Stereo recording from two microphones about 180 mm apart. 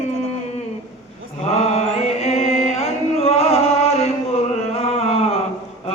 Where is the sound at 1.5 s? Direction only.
35° left (ahead or behind).